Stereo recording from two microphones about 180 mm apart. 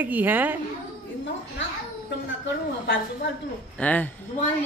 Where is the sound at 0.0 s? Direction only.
10° right (ahead or behind).